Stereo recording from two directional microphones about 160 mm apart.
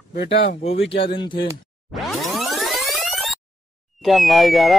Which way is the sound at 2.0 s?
Centre (ahead or behind).